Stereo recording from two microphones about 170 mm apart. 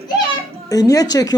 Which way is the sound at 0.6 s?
20° left (ahead or behind).